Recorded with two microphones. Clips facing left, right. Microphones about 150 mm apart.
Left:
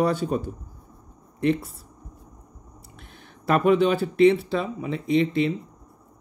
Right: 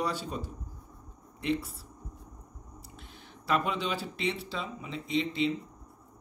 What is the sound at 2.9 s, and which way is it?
Speech, 55° left (ahead or behind).